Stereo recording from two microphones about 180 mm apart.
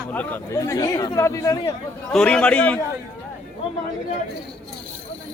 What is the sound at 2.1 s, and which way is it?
Speech, 5° left (ahead or behind).